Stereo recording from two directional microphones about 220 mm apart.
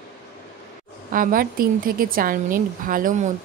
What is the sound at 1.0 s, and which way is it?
A woman's voice, 40° right (ahead or behind).